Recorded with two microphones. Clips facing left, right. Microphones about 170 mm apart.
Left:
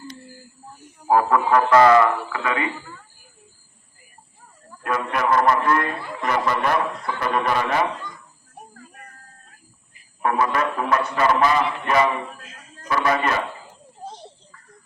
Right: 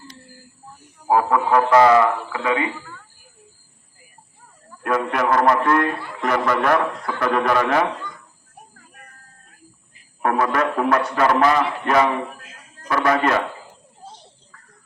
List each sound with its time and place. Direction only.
1.0 s a man's voice: 5° right (ahead or behind)
4.8 s a man's voice: 55° right (ahead or behind)
10.2 s a man's voice: 55° right (ahead or behind)